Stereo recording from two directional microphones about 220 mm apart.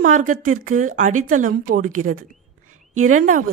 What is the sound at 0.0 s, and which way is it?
Speech, 35° right (ahead or behind).